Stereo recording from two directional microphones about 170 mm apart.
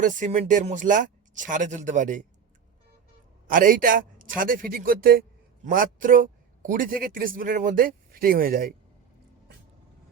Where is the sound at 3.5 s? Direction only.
55° right (ahead or behind).